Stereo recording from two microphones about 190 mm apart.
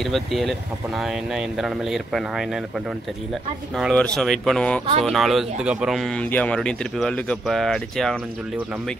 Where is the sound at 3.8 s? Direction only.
Centre (ahead or behind).